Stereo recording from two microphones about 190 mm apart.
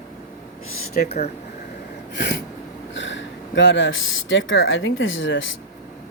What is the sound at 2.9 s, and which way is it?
Speech, 75° left (ahead or behind).